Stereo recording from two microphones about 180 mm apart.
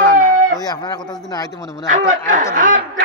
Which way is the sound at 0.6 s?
20° left (ahead or behind).